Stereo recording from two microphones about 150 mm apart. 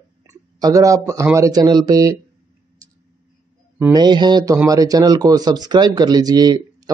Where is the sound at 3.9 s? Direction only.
30° right (ahead or behind).